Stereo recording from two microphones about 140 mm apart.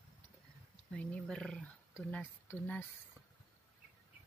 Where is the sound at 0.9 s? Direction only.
5° left (ahead or behind).